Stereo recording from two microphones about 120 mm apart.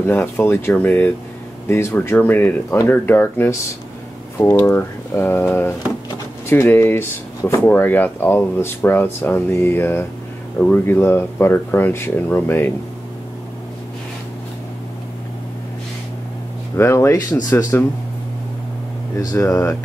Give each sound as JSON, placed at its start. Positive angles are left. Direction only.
{"t": 0.0, "sound": "speech", "side_deg": 20}
{"t": 4.6, "sound": "speech", "side_deg": 15}
{"t": 16.7, "sound": "speech", "side_deg": 20}
{"t": 17.5, "sound": "speech", "side_deg": 20}
{"t": 19.1, "sound": "speech", "side_deg": 25}